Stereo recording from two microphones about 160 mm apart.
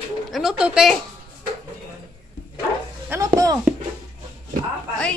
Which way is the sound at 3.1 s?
20° right (ahead or behind).